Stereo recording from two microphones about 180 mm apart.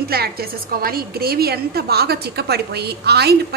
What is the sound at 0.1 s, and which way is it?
A woman's voice, 60° right (ahead or behind).